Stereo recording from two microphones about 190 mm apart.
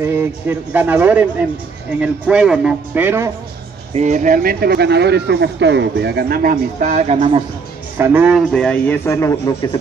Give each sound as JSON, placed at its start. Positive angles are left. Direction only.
{"t": 0.0, "sound": "a man's voice", "side_deg": -10}
{"t": 3.9, "sound": "speech", "side_deg": -40}
{"t": 8.0, "sound": "a man's voice", "side_deg": -5}